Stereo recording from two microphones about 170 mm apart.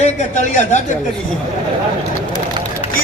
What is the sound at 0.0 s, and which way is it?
Speech, 45° left (ahead or behind).